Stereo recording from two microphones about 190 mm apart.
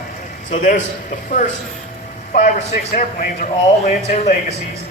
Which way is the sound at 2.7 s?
45° left (ahead or behind).